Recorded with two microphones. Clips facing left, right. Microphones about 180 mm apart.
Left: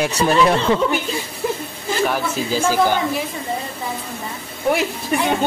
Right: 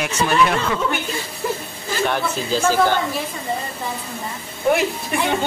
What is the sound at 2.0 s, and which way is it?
Speech, 5° left (ahead or behind).